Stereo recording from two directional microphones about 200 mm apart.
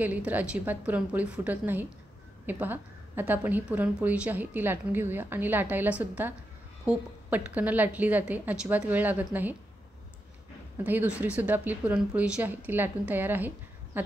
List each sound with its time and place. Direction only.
0.0 s a woman's voice: 10° right (ahead or behind)
10.8 s a woman's voice: 10° right (ahead or behind)